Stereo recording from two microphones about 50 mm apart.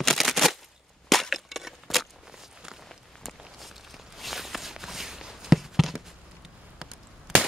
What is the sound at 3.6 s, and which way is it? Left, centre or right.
Walk, centre.